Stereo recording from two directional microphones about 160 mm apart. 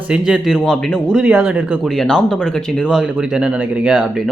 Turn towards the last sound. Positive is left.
turn(degrees=-5)  # may be behind; listen again after turning